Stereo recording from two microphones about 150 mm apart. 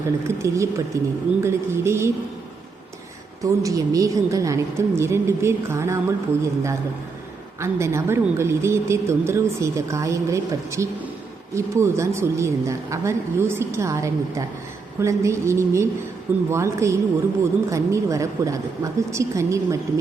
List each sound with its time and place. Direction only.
0.3 s a woman's voice: 20° right (ahead or behind)
3.4 s a woman's voice: 20° right (ahead or behind)